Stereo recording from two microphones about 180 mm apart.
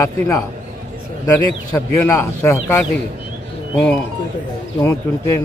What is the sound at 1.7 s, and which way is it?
A man's voice, 15° left (ahead or behind).